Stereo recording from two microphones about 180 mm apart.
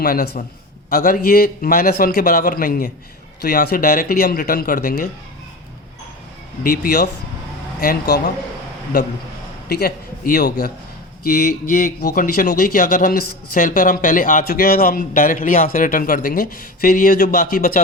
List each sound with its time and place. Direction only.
0.0 s a man's voice: 50° left (ahead or behind)
6.6 s a man's voice: 60° left (ahead or behind)
9.6 s a man's voice: 60° left (ahead or behind)